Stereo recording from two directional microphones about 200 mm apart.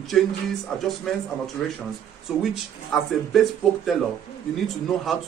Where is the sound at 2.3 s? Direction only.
5° right (ahead or behind).